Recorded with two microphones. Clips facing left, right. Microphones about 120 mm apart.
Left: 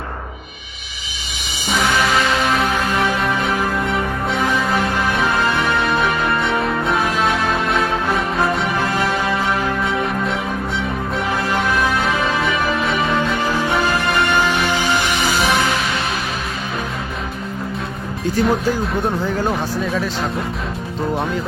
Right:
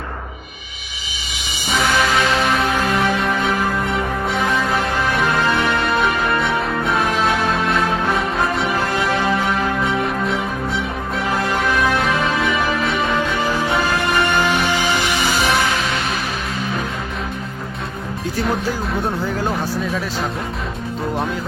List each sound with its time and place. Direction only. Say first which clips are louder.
1.7 s music: even; centre (ahead or behind)
13.7 s music: left 1 dB; 15° left (ahead or behind)
18.3 s speech: left 4 dB; centre (ahead or behind)